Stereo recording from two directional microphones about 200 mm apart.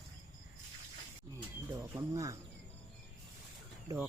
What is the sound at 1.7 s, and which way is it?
Cricket, 15° right (ahead or behind).